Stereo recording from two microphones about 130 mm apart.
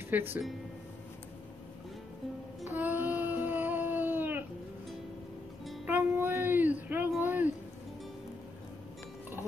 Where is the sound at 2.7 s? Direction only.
15° right (ahead or behind).